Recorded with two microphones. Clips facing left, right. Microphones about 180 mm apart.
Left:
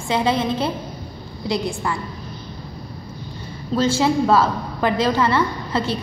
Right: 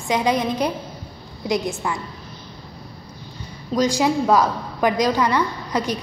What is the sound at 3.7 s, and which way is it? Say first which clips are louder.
A woman's voice: left 1 dB; 15° right (ahead or behind).